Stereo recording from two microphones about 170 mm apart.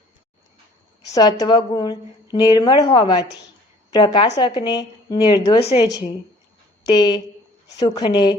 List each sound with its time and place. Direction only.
1.1 s a woman's voice: 25° left (ahead or behind)